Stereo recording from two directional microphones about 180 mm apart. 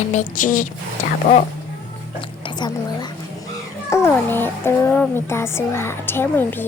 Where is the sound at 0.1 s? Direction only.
45° left (ahead or behind).